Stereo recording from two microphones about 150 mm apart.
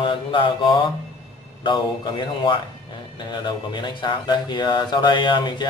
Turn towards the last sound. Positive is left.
turn(degrees=30)  # may be behind; listen again after turning